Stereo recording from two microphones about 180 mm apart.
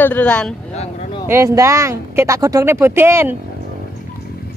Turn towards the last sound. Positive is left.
turn(degrees=-15)  # may be behind; listen again after turning